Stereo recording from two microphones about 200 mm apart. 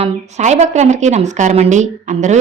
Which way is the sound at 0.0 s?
35° right (ahead or behind).